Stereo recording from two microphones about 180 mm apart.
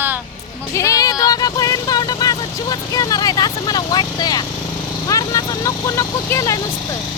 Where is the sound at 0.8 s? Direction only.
20° left (ahead or behind).